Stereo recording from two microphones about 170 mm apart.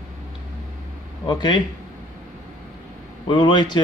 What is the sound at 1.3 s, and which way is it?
Speech, 25° left (ahead or behind).